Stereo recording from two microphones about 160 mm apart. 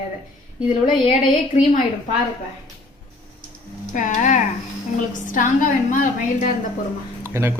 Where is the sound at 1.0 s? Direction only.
50° left (ahead or behind).